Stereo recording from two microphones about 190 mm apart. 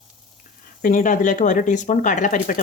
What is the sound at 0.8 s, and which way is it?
Speech, 40° left (ahead or behind).